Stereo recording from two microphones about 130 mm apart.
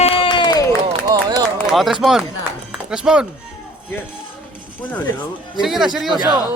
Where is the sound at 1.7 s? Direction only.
Centre (ahead or behind).